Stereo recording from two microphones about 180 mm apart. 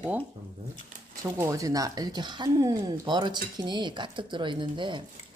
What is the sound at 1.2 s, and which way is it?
Speech, 20° right (ahead or behind).